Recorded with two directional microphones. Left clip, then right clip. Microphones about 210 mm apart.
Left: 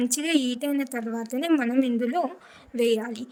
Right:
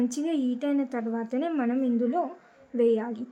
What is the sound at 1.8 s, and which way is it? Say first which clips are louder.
Speech: left 1 dB; 40° left (ahead or behind).